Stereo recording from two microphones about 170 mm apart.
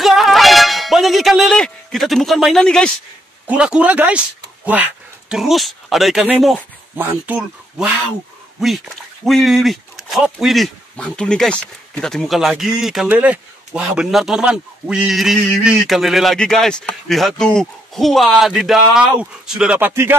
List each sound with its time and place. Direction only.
0.0 s music: centre (ahead or behind)
3.4 s speech: 5° right (ahead or behind)
5.3 s speech: centre (ahead or behind)